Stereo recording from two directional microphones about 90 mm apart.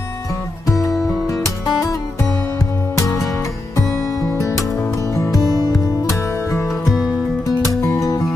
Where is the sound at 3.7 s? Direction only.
35° left (ahead or behind).